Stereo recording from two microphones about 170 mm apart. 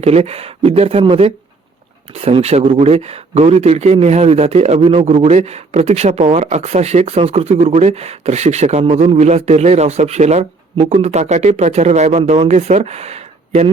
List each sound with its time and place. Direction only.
0.0 s speech: 35° right (ahead or behind)